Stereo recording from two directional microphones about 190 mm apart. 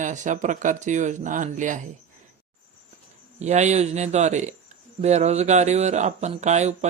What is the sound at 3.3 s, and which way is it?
A man's voice, 35° right (ahead or behind).